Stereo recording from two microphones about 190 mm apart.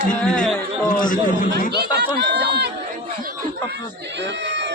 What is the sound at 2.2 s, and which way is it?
Speech, 60° right (ahead or behind).